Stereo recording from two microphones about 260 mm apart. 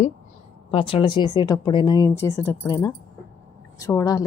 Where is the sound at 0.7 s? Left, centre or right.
Left.